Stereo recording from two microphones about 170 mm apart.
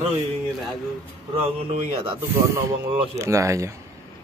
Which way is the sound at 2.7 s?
15° right (ahead or behind).